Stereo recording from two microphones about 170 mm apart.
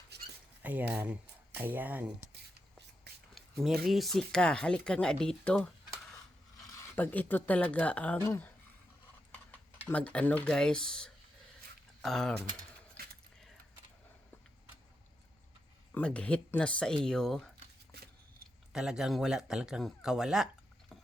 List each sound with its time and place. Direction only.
0.1 s a sound: 75° right (ahead or behind)
0.6 s speech: 10° right (ahead or behind)
2.3 s whispering: 75° right (ahead or behind)
3.6 s speech: centre (ahead or behind)
6.9 s speech: 10° left (ahead or behind)
9.9 s speech: 10° left (ahead or behind)
15.9 s speech: 5° left (ahead or behind)
18.7 s speech: 5° right (ahead or behind)